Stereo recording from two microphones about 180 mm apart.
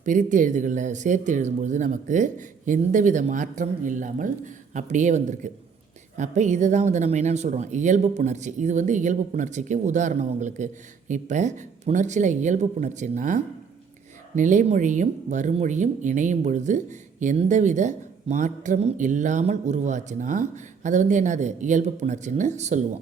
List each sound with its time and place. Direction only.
0.0 s speech: 45° right (ahead or behind)